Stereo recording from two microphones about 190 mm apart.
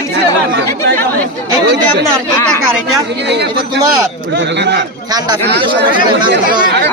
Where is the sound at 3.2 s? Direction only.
60° right (ahead or behind).